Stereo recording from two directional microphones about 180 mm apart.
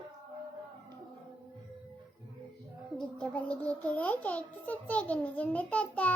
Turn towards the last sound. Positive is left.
turn(degrees=5)  # may be behind; listen again after turning